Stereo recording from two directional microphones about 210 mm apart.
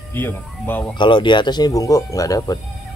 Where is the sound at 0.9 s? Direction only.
20° left (ahead or behind).